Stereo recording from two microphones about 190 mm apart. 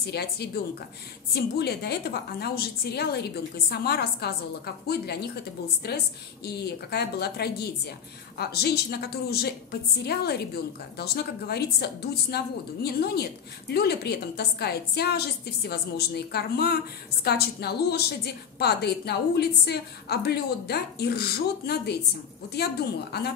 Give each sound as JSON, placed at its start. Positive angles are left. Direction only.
{"t": 0.0, "sound": "a woman's voice", "side_deg": 55}